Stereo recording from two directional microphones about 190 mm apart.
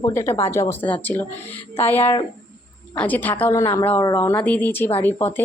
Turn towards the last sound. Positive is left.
turn(degrees=10)  # may be behind; listen again after turning